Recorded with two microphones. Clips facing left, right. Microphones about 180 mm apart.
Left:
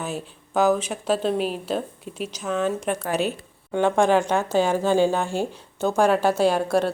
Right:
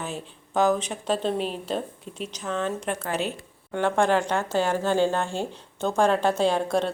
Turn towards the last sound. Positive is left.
turn(degrees=5)  # may be behind; listen again after turning